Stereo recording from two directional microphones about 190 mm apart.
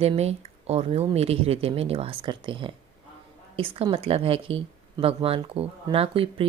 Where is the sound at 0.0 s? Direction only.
35° right (ahead or behind).